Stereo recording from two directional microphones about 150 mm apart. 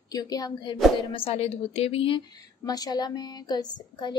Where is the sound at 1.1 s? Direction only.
40° left (ahead or behind).